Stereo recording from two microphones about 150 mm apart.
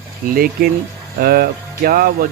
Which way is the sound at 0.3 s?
75° right (ahead or behind).